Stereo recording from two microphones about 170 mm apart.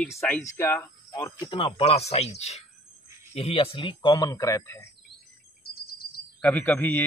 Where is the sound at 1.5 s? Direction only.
30° left (ahead or behind).